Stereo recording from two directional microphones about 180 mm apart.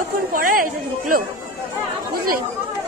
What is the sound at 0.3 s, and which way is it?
Chatter, 50° right (ahead or behind).